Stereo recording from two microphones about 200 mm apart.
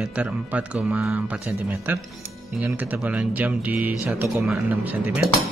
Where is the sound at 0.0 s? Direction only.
5° right (ahead or behind).